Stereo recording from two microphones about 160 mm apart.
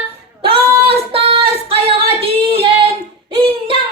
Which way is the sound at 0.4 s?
35° right (ahead or behind).